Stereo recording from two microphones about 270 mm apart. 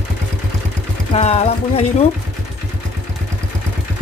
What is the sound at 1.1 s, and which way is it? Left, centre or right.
Speech, left.